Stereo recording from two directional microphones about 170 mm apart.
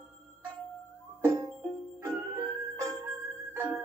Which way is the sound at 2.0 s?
15° right (ahead or behind).